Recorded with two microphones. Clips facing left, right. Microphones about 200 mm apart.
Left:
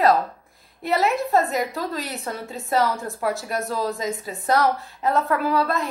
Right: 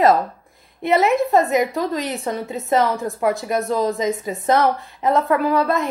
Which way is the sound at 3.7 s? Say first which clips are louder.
Right 6 dB; 20° right (ahead or behind).